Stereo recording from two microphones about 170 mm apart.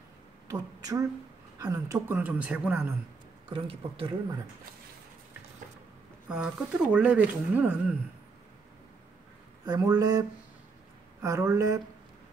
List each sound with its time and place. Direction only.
0.5 s speech: 20° right (ahead or behind)
3.4 s a man's voice: 30° right (ahead or behind)
6.2 s speech: 5° right (ahead or behind)
9.7 s speech: 20° right (ahead or behind)
11.2 s speech: 15° right (ahead or behind)